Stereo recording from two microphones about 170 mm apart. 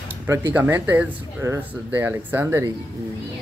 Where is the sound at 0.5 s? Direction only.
10° right (ahead or behind).